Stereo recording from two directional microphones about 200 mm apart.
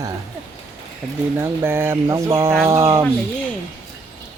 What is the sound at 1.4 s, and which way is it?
Speech, 10° right (ahead or behind).